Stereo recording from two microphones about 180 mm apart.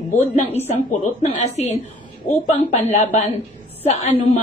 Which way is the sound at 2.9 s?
40° left (ahead or behind).